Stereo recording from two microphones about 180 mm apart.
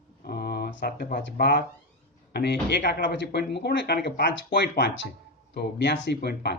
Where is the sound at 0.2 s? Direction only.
60° left (ahead or behind).